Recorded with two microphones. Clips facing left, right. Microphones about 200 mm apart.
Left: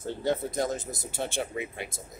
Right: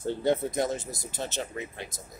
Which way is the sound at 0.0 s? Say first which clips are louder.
Right 3 dB; 15° right (ahead or behind).